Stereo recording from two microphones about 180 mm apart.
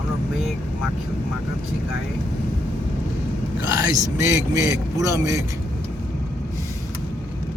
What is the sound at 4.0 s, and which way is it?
A man's voice, 15° right (ahead or behind).